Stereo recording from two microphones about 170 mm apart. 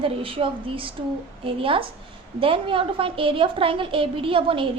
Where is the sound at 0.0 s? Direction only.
30° right (ahead or behind).